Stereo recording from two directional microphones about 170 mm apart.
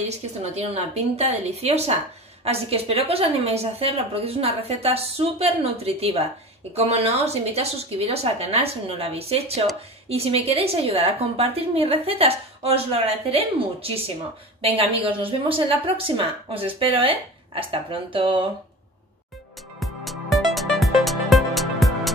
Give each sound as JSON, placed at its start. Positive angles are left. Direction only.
{"t": 0.1, "sound": "a woman's voice", "side_deg": -40}
{"t": 19.8, "sound": "music", "side_deg": 0}